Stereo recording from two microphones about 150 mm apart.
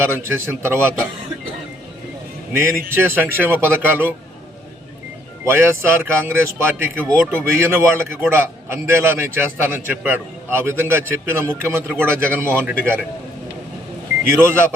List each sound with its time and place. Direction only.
0.0 s a man's voice: 15° right (ahead or behind)
2.5 s a man's voice: 15° right (ahead or behind)
5.5 s a man's voice: 15° right (ahead or behind)
14.3 s a man's voice: 15° right (ahead or behind)